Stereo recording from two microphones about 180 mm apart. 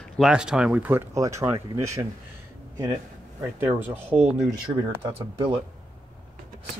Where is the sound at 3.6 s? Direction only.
10° right (ahead or behind).